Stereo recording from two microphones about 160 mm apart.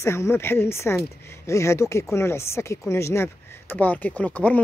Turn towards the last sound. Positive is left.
turn(degrees=10)  # may be behind; listen again after turning